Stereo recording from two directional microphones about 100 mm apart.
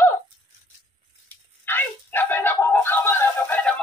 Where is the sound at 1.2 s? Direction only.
20° left (ahead or behind).